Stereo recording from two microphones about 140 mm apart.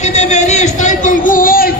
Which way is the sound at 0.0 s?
55° left (ahead or behind).